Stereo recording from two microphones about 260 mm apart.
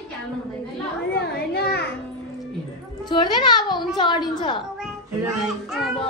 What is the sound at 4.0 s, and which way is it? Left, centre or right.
Speech, centre.